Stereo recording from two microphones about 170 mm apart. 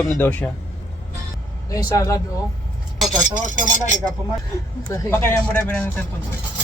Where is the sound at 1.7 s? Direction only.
20° left (ahead or behind).